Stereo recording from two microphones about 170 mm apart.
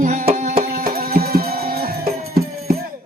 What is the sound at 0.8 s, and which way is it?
Music, 60° right (ahead or behind).